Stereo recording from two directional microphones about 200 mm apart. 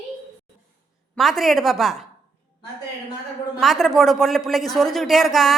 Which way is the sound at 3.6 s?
Centre (ahead or behind).